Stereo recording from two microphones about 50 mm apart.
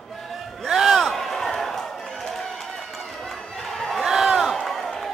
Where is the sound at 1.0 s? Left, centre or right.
Centre.